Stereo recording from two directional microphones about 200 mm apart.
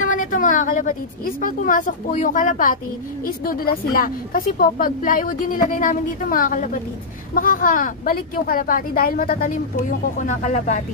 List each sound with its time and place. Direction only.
0.0 s a woman's voice: 40° left (ahead or behind)